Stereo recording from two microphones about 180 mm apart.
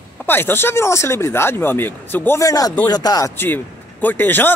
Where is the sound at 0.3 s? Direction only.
10° left (ahead or behind).